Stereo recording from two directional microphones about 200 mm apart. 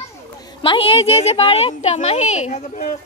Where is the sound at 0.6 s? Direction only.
25° left (ahead or behind).